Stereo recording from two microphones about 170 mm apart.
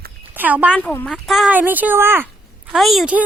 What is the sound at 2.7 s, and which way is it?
Speech, centre (ahead or behind).